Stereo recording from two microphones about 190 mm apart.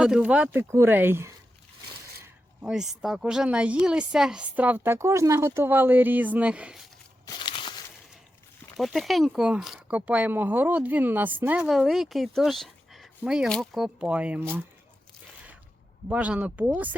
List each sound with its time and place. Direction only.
0.0 s speech: 5° right (ahead or behind)
7.3 s a sound: 25° left (ahead or behind)
8.8 s speech: centre (ahead or behind)
16.0 s speech: 5° right (ahead or behind)